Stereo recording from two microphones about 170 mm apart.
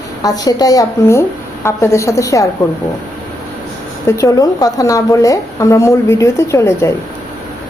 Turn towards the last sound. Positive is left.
turn(degrees=15)  # may be behind; listen again after turning